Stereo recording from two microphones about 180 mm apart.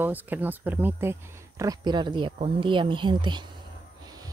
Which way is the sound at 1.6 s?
20° right (ahead or behind).